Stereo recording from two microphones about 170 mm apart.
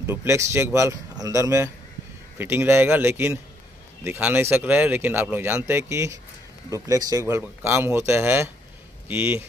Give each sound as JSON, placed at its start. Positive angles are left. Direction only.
{"t": 0.0, "sound": "speech", "side_deg": -15}